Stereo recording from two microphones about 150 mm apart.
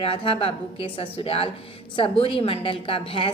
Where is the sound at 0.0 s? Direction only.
40° left (ahead or behind).